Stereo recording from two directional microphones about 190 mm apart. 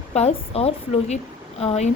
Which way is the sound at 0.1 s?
35° left (ahead or behind).